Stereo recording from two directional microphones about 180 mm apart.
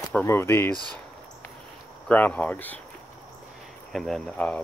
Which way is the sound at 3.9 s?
Centre (ahead or behind).